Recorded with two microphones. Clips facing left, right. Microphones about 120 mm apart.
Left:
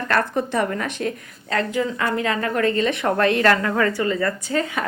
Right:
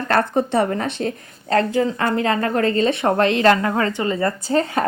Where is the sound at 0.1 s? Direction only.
30° right (ahead or behind).